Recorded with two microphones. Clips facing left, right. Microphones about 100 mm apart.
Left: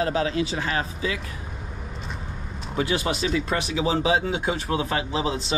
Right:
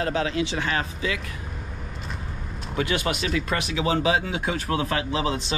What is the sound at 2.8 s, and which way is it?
Speech, 35° left (ahead or behind).